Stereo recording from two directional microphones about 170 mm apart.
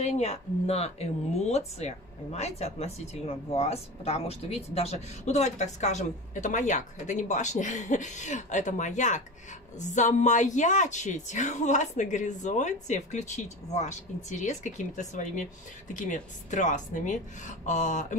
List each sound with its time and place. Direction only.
0.0 s speech: 40° left (ahead or behind)